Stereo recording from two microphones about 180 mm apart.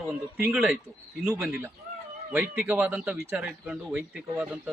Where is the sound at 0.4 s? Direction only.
5° right (ahead or behind).